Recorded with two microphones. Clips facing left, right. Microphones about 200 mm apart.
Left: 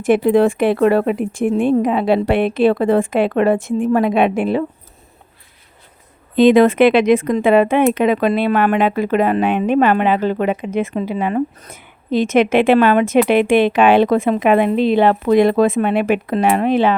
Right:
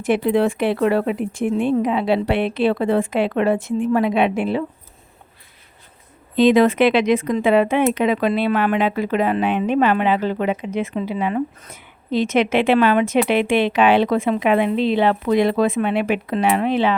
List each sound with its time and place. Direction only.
0.0 s speech: 50° left (ahead or behind)
6.3 s speech: 55° left (ahead or behind)